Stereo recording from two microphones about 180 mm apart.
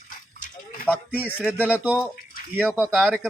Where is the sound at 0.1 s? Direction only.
50° left (ahead or behind).